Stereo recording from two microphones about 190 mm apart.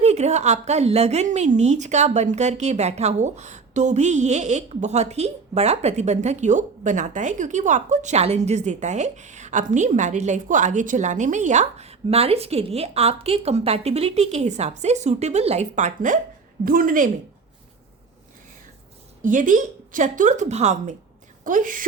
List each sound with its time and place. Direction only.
0.0 s a woman's voice: 35° right (ahead or behind)
19.2 s a woman's voice: 45° right (ahead or behind)